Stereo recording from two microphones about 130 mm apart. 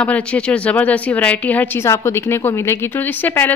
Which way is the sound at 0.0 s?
10° left (ahead or behind).